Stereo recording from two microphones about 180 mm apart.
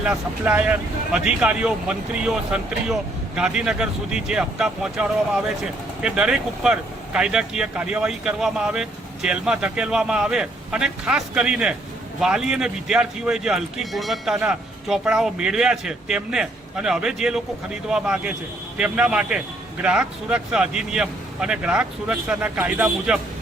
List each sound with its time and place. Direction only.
0.0 s speech: 5° right (ahead or behind)